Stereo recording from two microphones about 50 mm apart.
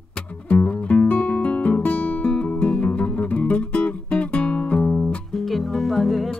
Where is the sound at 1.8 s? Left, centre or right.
Left.